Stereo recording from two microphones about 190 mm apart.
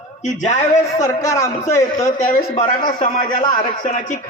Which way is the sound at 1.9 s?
45° left (ahead or behind).